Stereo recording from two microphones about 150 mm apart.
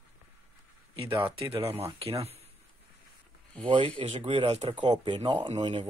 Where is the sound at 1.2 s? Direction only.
40° right (ahead or behind).